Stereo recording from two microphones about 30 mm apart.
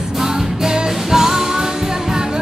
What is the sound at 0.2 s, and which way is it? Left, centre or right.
Music, centre.